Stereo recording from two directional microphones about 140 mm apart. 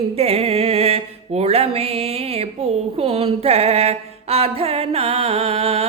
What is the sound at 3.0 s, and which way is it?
Music, 45° right (ahead or behind).